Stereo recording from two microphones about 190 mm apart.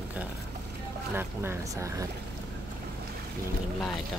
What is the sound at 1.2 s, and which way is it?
Speech, 15° right (ahead or behind).